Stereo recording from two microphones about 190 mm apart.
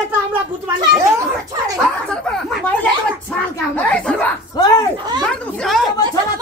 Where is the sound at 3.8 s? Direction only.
5° left (ahead or behind).